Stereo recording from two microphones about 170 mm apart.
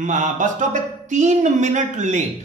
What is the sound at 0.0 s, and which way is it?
A man's voice, 45° right (ahead or behind).